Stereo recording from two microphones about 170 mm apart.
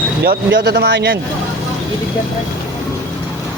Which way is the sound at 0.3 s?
70° right (ahead or behind).